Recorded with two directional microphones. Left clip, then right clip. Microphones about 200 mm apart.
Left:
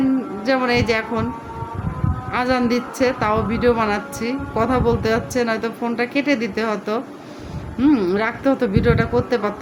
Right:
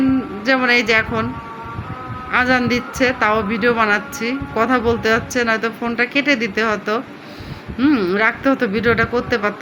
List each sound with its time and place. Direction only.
0.4 s speech: 5° left (ahead or behind)
2.3 s speech: 5° left (ahead or behind)